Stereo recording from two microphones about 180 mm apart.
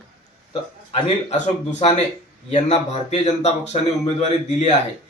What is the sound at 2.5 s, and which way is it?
Speech, 40° left (ahead or behind).